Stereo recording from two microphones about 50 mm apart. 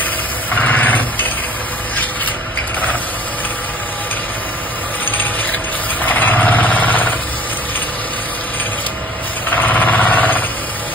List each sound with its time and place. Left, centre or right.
0.5 s vehicle: left
6.0 s vehicle: left
9.6 s vehicle: left